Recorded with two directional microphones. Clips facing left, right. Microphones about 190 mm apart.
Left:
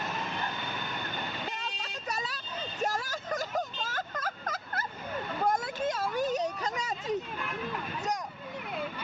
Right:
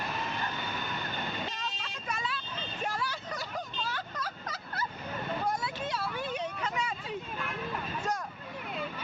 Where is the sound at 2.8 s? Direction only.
45° left (ahead or behind).